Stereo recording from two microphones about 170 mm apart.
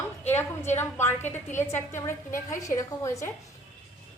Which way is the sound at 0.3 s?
15° left (ahead or behind).